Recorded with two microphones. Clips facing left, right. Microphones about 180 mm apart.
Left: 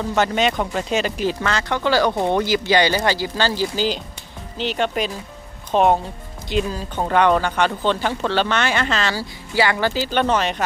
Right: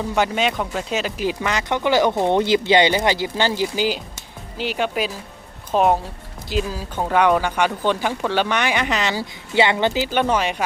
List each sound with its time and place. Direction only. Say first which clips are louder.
0.1 s speech: left 2 dB; 5° right (ahead or behind)